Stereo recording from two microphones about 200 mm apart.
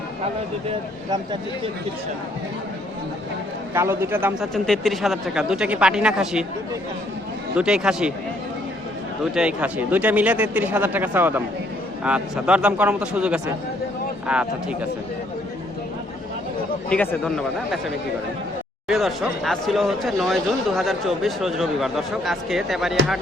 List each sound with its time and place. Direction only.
3.8 s speech: 10° right (ahead or behind)
4.5 s speech: centre (ahead or behind)
7.5 s speech: 5° right (ahead or behind)
9.3 s speech: 5° right (ahead or behind)
16.9 s speech: 5° left (ahead or behind)